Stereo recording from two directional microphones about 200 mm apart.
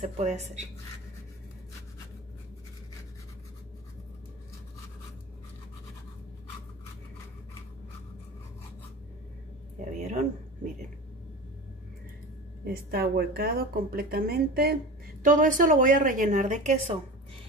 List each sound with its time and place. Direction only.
0.2 s a woman's voice: 35° right (ahead or behind)
9.9 s a woman's voice: 35° right (ahead or behind)
12.6 s a woman's voice: 50° right (ahead or behind)